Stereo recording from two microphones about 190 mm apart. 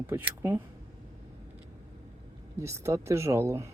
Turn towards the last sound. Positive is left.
turn(degrees=-15)  # may be behind; listen again after turning